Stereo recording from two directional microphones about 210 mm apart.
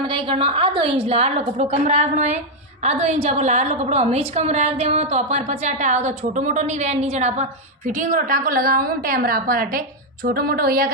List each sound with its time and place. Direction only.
0.1 s a woman's voice: 25° right (ahead or behind); by 10.9 s 45° right (ahead or behind)